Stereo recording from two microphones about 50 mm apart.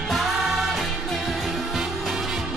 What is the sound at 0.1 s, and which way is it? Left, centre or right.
Music, centre.